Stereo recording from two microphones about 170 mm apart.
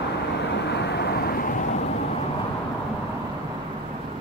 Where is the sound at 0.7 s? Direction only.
80° left.